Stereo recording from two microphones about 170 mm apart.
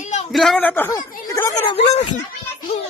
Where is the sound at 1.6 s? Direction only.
35° left (ahead or behind).